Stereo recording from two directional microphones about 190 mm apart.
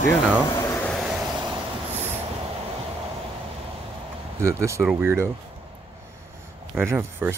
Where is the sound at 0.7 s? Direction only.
5° left (ahead or behind).